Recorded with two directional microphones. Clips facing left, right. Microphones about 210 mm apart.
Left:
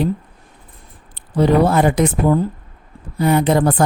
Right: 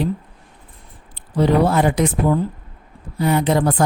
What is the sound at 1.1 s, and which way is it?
Speech, 50° left (ahead or behind).